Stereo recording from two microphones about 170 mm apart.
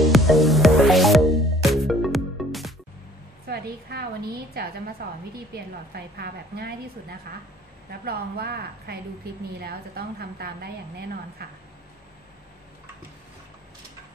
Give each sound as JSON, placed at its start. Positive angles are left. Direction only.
{"t": 0.0, "sound": "music", "side_deg": 0}
{"t": 3.4, "sound": "a sound", "side_deg": -65}
{"t": 4.6, "sound": "a woman's voice", "side_deg": -65}